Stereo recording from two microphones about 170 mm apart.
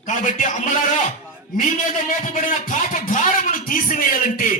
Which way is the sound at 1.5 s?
50° left (ahead or behind).